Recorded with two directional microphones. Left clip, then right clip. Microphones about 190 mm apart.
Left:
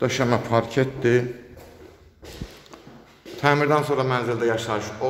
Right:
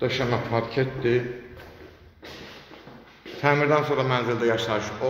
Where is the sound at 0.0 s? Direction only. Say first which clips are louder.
Left 3 dB; 35° left (ahead or behind).